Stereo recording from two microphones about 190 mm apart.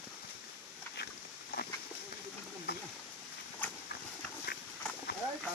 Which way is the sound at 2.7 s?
55° left (ahead or behind).